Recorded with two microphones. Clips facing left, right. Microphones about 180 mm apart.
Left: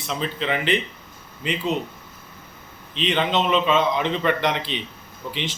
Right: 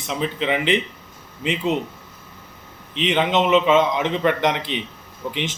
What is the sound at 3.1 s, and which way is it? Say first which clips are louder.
A man's voice: right 4 dB; 20° right (ahead or behind).